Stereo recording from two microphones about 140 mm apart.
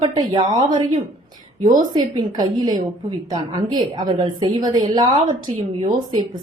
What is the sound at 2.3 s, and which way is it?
A woman's voice, 30° right (ahead or behind).